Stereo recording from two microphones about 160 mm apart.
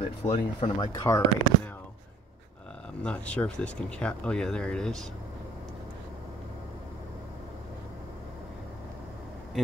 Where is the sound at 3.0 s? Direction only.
5° left (ahead or behind).